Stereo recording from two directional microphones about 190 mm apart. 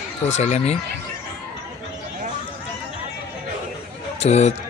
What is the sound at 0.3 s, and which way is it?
Speech, 35° left (ahead or behind).